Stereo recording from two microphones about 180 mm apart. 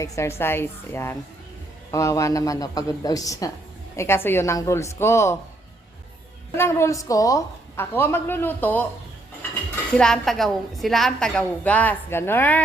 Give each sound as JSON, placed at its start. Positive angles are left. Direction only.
{"t": 0.0, "sound": "a woman's voice", "side_deg": 15}
{"t": 6.6, "sound": "a woman's voice", "side_deg": 15}
{"t": 10.0, "sound": "a woman's voice", "side_deg": 5}